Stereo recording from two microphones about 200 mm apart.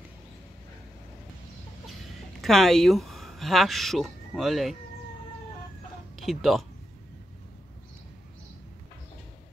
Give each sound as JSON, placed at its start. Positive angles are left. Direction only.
{"t": 2.4, "sound": "speech", "side_deg": 0}
{"t": 6.1, "sound": "speech", "side_deg": 0}